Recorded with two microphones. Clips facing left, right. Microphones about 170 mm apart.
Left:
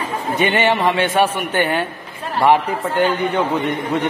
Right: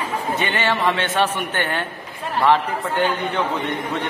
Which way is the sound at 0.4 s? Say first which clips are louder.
Left 7 dB; 20° left (ahead or behind).